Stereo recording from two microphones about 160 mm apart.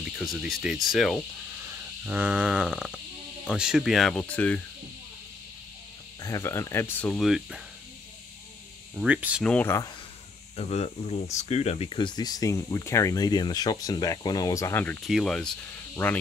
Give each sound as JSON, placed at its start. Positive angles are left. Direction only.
{"t": 0.2, "sound": "speech", "side_deg": 0}
{"t": 1.7, "sound": "frog", "side_deg": -10}
{"t": 3.4, "sound": "speech", "side_deg": -5}
{"t": 6.2, "sound": "speech", "side_deg": 20}
{"t": 8.9, "sound": "speech", "side_deg": -10}
{"t": 9.4, "sound": "speech", "side_deg": 10}
{"t": 10.5, "sound": "speech", "side_deg": 40}
{"t": 15.0, "sound": "speech", "side_deg": 0}